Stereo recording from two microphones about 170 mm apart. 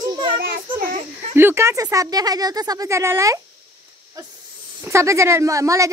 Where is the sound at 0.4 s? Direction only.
60° right (ahead or behind).